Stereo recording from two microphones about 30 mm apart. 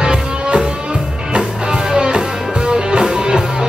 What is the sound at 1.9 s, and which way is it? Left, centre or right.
Music, right.